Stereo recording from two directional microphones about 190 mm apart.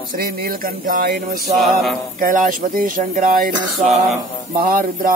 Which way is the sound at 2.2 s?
45° right (ahead or behind).